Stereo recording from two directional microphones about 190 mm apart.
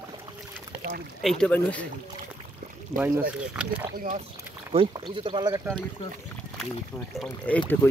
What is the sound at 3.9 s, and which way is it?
Speech, 45° right (ahead or behind).